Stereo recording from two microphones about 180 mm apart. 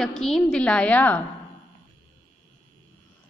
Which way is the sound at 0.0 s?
5° left (ahead or behind).